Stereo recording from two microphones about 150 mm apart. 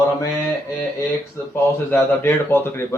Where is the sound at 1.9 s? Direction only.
15° left (ahead or behind).